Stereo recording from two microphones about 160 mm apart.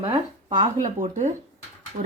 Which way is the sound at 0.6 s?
50° right (ahead or behind).